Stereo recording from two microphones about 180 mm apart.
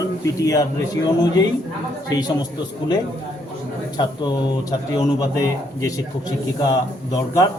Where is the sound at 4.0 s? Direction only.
20° left (ahead or behind).